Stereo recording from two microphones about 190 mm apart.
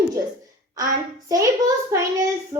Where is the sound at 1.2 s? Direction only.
20° right (ahead or behind).